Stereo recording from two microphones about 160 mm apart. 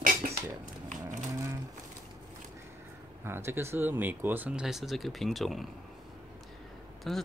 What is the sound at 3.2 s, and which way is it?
Speech, 15° right (ahead or behind).